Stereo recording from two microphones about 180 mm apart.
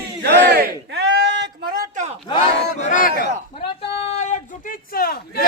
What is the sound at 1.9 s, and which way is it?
Battle cry, 40° right (ahead or behind).